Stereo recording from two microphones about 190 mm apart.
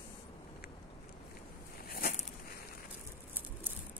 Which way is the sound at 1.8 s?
50° left (ahead or behind).